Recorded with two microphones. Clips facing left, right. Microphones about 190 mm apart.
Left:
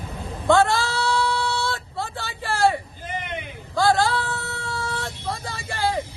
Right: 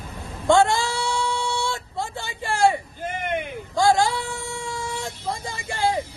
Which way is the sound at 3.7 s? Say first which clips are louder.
Right 1 dB; 15° right (ahead or behind).